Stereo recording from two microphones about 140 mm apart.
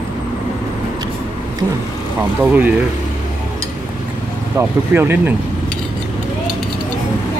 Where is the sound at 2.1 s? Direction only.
15° right (ahead or behind).